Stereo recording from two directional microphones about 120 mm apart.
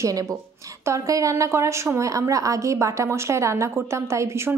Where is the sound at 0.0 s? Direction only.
30° right (ahead or behind).